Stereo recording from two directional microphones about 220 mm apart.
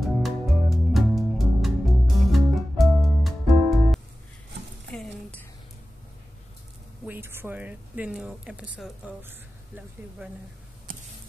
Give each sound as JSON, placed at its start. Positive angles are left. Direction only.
{"t": 0.0, "sound": "music", "side_deg": 0}
{"t": 7.1, "sound": "speech", "side_deg": -10}
{"t": 10.9, "sound": "a sound", "side_deg": -40}